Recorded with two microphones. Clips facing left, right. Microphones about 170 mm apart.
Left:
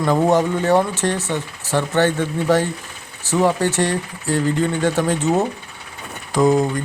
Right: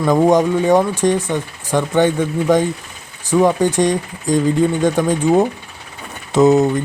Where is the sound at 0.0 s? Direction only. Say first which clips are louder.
Right 3 dB; 15° right (ahead or behind).